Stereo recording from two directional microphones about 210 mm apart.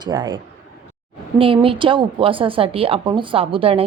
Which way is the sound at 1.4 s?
25° right (ahead or behind).